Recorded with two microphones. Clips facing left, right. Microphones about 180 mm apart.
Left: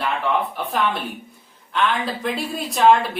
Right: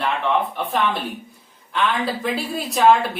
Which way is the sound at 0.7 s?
Centre (ahead or behind).